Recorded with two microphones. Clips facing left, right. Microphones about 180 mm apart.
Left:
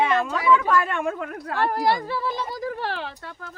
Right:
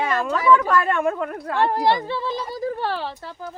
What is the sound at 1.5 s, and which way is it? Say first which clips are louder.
Speech: right 3 dB; 25° right (ahead or behind).